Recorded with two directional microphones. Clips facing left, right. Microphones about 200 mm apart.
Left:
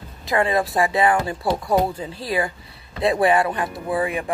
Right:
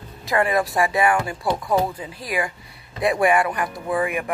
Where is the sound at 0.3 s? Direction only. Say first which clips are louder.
Even; 20° left (ahead or behind).